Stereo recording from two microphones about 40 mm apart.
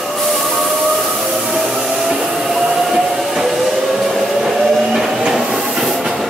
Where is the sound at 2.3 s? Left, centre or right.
Centre.